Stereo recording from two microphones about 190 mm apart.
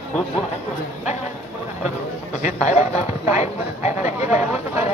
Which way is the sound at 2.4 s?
40° left (ahead or behind).